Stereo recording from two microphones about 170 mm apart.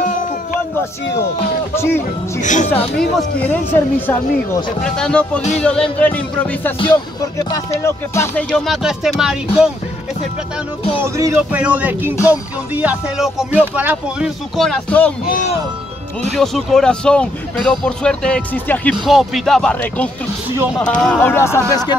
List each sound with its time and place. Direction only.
1.8 s speech: 15° left (ahead or behind)
2.4 s speech: 45° left (ahead or behind)
3.2 s speech: 10° left (ahead or behind)
6.8 s speech: 30° left (ahead or behind)
8.5 s speech: centre (ahead or behind)
11.0 s music: 15° right (ahead or behind)
13.7 s speech: 10° right (ahead or behind)
16.3 s speech: centre (ahead or behind)